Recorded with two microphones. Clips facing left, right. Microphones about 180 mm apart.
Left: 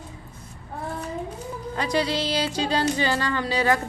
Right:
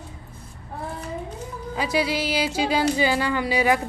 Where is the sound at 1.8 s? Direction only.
5° right (ahead or behind).